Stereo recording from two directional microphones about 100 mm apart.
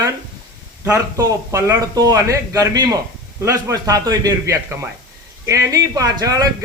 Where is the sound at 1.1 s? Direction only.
30° right (ahead or behind).